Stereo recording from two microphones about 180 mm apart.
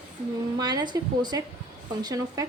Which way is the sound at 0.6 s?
20° right (ahead or behind).